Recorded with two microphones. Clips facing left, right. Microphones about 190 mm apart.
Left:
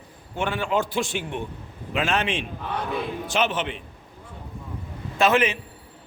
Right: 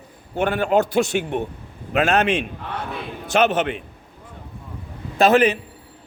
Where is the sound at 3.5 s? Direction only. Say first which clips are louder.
Right 7 dB; 45° right (ahead or behind).